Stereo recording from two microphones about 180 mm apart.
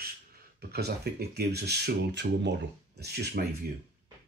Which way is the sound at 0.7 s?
60° right (ahead or behind).